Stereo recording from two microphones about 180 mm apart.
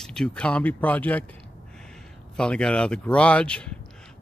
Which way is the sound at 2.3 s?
5° left (ahead or behind).